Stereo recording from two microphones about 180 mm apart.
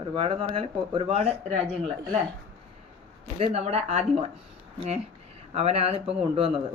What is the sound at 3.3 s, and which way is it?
Speech, 35° right (ahead or behind).